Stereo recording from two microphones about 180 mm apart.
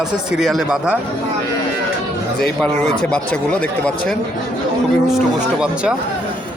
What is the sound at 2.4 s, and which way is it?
Speech, 5° left (ahead or behind).